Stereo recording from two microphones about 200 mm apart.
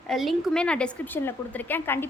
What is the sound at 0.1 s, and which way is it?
A woman's voice, centre (ahead or behind).